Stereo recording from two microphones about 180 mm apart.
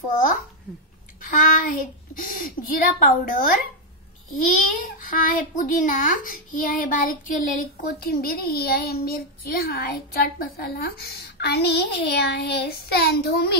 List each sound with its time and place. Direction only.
1.2 s a child's voice: 50° left (ahead or behind)